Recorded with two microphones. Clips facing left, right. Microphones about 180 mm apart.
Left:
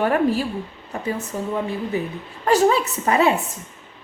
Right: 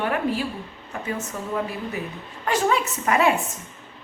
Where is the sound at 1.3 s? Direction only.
30° left (ahead or behind).